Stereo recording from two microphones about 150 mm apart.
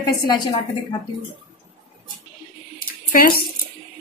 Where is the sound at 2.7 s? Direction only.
70° left (ahead or behind).